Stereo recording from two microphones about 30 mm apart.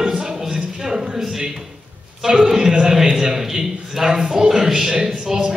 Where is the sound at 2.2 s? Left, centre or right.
Centre.